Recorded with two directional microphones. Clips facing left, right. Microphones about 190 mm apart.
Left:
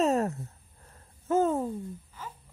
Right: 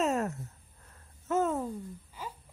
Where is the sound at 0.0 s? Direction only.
35° left (ahead or behind).